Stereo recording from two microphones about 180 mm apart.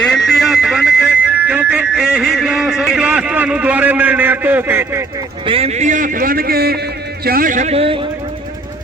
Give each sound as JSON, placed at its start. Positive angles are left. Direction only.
{"t": 0.0, "sound": "music", "side_deg": 0}
{"t": 5.5, "sound": "a man's voice", "side_deg": -35}